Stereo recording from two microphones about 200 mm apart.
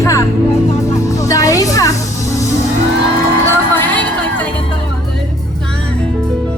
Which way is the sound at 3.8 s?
10° left (ahead or behind).